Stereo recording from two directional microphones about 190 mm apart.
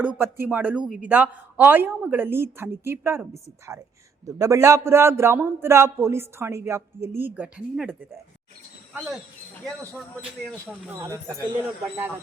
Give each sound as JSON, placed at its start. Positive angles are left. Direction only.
{"t": 0.0, "sound": "a woman's voice", "side_deg": -10}
{"t": 11.3, "sound": "a woman's voice", "side_deg": -20}